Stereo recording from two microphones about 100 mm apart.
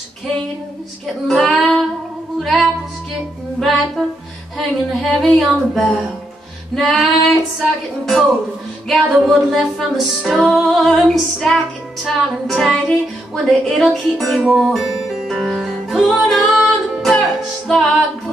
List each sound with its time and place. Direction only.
1.0 s child singing: centre (ahead or behind)
2.3 s music: centre (ahead or behind)
9.3 s music: centre (ahead or behind)